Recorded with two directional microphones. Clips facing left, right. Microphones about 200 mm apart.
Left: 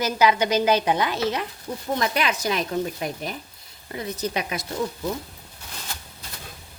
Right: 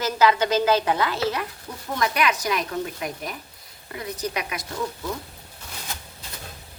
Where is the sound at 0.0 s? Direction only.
15° left (ahead or behind).